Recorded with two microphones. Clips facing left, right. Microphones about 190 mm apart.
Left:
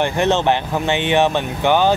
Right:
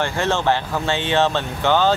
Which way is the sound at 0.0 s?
20° left (ahead or behind).